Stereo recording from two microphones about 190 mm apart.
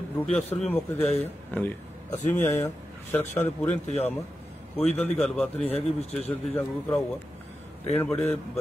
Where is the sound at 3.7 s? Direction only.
35° left (ahead or behind).